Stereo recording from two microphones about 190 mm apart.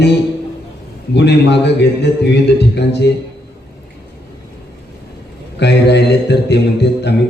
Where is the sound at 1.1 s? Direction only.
65° left (ahead or behind).